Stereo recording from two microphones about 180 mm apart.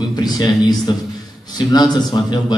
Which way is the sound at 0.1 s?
20° left (ahead or behind).